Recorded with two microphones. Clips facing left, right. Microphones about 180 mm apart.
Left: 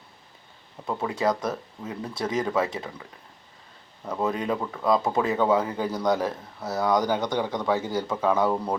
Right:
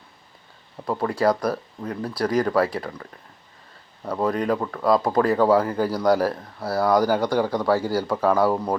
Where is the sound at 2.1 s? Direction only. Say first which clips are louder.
Right 5 dB; 25° left (ahead or behind).